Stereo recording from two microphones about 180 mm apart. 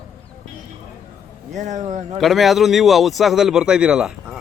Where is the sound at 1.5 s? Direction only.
40° right (ahead or behind).